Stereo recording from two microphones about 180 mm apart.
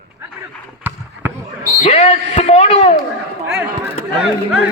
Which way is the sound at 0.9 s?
10° right (ahead or behind).